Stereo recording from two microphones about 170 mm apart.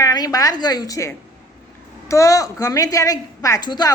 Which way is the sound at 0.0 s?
20° left (ahead or behind).